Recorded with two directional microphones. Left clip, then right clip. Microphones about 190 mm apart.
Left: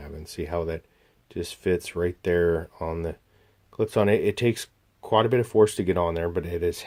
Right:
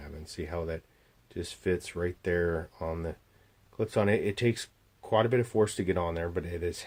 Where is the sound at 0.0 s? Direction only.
30° left (ahead or behind).